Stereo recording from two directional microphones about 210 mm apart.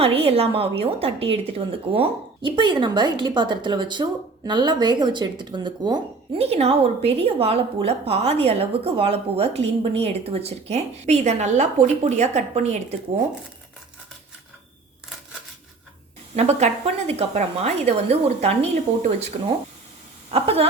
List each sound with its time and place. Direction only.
0.0 s speech: 30° right (ahead or behind)
16.3 s a woman's voice: 30° right (ahead or behind)